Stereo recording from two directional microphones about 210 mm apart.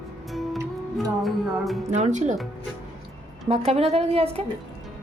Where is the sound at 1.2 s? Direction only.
Centre (ahead or behind).